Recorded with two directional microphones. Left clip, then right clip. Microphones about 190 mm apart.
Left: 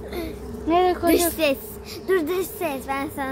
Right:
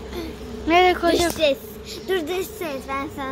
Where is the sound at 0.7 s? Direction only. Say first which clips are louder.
Right 3 dB; 5° left (ahead or behind).